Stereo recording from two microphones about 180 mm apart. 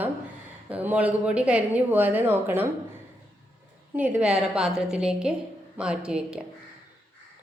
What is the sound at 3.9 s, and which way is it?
A woman's voice, 5° right (ahead or behind).